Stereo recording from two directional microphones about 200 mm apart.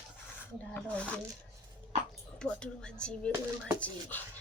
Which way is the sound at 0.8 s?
5° left (ahead or behind).